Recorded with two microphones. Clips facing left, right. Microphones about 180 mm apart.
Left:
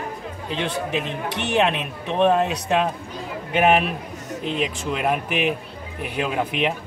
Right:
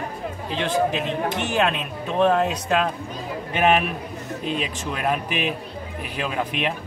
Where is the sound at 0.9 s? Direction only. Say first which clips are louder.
Right 2 dB; 65° left (ahead or behind).